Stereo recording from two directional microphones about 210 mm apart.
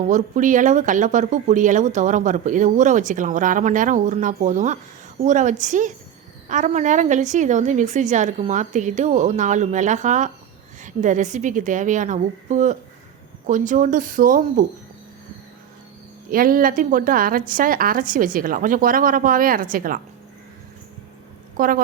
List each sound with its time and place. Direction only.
0.0 s speech: 35° right (ahead or behind)
16.3 s speech: 40° right (ahead or behind)
21.6 s speech: 40° right (ahead or behind)